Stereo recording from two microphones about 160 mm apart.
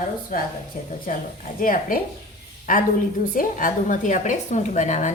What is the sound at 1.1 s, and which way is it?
A woman's voice, 55° left (ahead or behind).